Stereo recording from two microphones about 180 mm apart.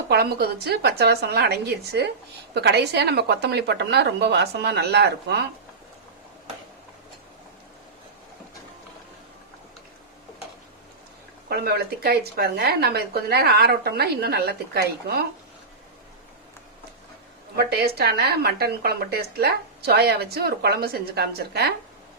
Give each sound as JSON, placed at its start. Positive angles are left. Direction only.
{"t": 0.1, "sound": "a woman's voice", "side_deg": -60}
{"t": 11.4, "sound": "a woman's voice", "side_deg": -60}
{"t": 17.6, "sound": "a woman's voice", "side_deg": -60}